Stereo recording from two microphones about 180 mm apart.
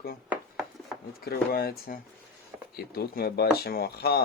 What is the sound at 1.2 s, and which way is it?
Speech, 60° left (ahead or behind).